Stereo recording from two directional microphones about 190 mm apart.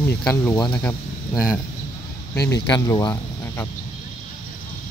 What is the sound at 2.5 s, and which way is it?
Speech, 20° left (ahead or behind).